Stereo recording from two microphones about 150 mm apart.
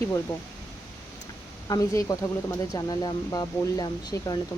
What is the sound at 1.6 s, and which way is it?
Speech, 25° left (ahead or behind).